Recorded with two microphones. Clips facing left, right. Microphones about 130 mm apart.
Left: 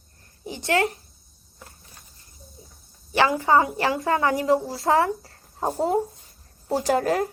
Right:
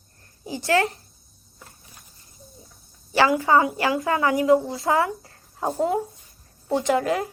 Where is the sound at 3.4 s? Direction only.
30° left (ahead or behind).